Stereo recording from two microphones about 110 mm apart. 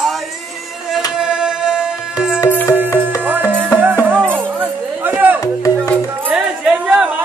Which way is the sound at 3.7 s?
15° right (ahead or behind).